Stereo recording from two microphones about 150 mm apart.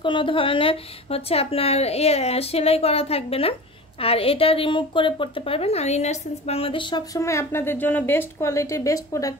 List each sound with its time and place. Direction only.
0.0 s a woman's voice: 35° left (ahead or behind)
7.2 s a woman's voice: 20° left (ahead or behind)